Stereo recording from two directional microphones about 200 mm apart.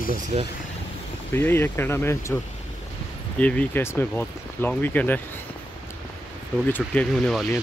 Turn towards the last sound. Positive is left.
turn(degrees=5)  # may be behind; listen again after turning